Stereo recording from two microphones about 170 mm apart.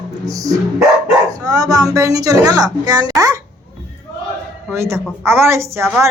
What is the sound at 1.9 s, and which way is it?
Speech, 20° right (ahead or behind).